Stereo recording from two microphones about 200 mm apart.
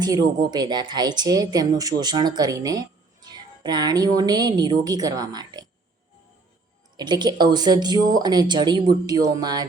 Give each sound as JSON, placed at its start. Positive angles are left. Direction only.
{"t": 0.0, "sound": "a woman's voice", "side_deg": -20}
{"t": 6.9, "sound": "a woman's voice", "side_deg": -20}